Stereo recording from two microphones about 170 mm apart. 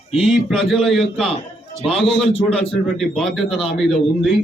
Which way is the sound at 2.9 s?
Centre (ahead or behind).